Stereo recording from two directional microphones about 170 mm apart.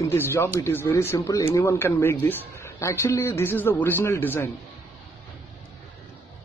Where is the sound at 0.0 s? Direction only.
15° left (ahead or behind).